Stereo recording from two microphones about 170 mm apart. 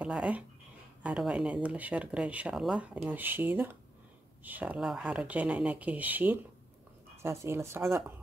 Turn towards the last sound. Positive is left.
turn(degrees=-15)  # may be behind; listen again after turning